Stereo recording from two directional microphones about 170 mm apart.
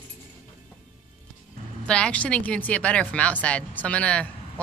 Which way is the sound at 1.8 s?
5° left (ahead or behind).